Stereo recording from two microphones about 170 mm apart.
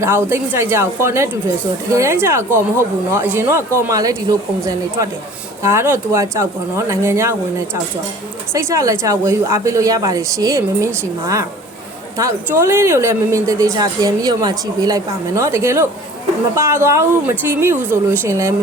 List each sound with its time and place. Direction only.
0.0 s a woman's voice: 15° right (ahead or behind)
12.1 s speech: 15° right (ahead or behind)